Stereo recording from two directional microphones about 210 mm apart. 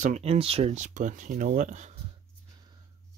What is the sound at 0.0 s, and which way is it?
Speech, 30° right (ahead or behind).